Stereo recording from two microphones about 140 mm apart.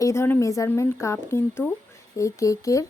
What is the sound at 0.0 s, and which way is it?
A woman's voice, 20° left (ahead or behind).